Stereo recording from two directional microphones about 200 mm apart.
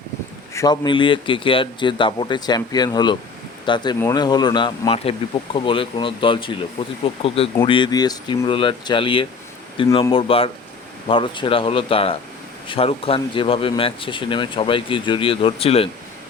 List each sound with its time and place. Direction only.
0.5 s speech: 20° left (ahead or behind)